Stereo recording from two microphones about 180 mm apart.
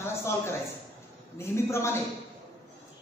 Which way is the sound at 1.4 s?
15° left (ahead or behind).